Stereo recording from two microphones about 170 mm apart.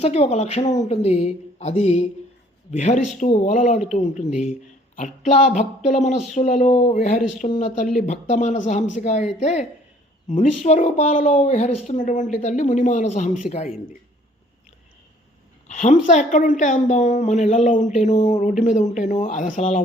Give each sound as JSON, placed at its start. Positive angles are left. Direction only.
{"t": 0.0, "sound": "a woman's voice", "side_deg": 40}
{"t": 3.4, "sound": "a woman's voice", "side_deg": 50}
{"t": 7.0, "sound": "a woman's voice", "side_deg": 50}
{"t": 15.7, "sound": "a woman's voice", "side_deg": 45}